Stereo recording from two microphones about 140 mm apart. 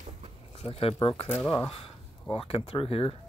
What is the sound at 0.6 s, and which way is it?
Speech, 45° left (ahead or behind).